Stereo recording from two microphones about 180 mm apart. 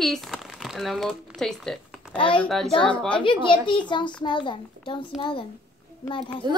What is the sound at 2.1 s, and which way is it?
Speech, 30° left (ahead or behind).